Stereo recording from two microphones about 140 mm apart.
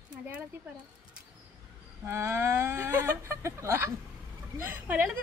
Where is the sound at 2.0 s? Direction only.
20° right (ahead or behind).